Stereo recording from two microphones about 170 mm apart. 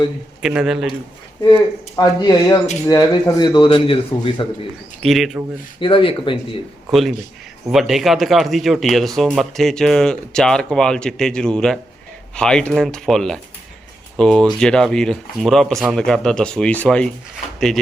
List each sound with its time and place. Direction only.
0.4 s speech: 5° right (ahead or behind)
2.0 s speech: 20° left (ahead or behind)
5.0 s speech: centre (ahead or behind)
5.8 s speech: 30° left (ahead or behind)
6.9 s speech: centre (ahead or behind)